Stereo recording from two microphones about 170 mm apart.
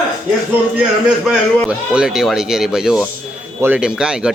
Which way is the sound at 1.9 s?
5° right (ahead or behind).